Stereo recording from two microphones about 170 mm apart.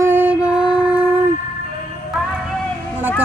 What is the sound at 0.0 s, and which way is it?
Music, 10° right (ahead or behind).